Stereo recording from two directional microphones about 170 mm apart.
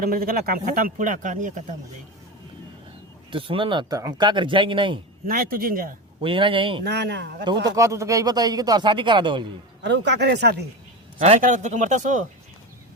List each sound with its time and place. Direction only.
0.0 s speech: 60° right (ahead or behind)
3.2 s speech: 30° right (ahead or behind)
5.2 s speech: 60° right (ahead or behind)
6.2 s speech: 30° right (ahead or behind)
6.8 s speech: 85° right
7.4 s speech: 25° right (ahead or behind)
9.8 s speech: 90° right
11.2 s speech: 45° right (ahead or behind)